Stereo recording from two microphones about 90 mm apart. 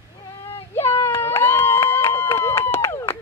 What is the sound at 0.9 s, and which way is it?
Run, 30° left (ahead or behind).